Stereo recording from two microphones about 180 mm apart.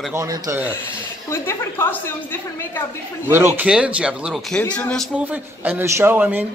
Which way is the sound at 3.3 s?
15° right (ahead or behind).